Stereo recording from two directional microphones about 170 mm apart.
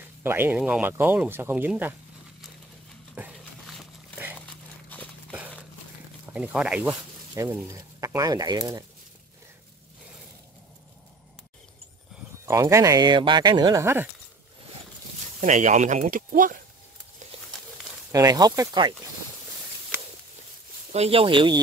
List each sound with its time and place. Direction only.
0.2 s speech: 10° right (ahead or behind)
4.4 s a sound: 10° left (ahead or behind)
6.2 s speech: 5° right (ahead or behind); by 8.8 s 20° right (ahead or behind)
12.4 s speech: 15° right (ahead or behind)
15.4 s speech: 45° right (ahead or behind)
18.1 s speech: 20° right (ahead or behind)
20.9 s speech: 35° right (ahead or behind)